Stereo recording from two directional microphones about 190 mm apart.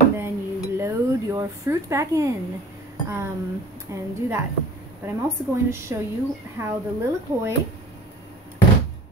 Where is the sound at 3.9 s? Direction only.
15° right (ahead or behind).